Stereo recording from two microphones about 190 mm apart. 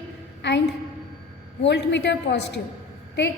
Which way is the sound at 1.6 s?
65° left (ahead or behind).